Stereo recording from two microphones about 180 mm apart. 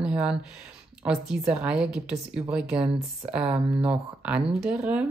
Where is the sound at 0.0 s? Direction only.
5° right (ahead or behind).